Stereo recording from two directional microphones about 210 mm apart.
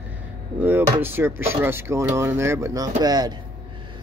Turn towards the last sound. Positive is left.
turn(degrees=-20)  # may be behind; listen again after turning